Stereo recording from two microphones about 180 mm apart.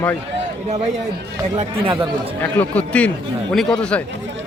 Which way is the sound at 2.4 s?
10° left (ahead or behind).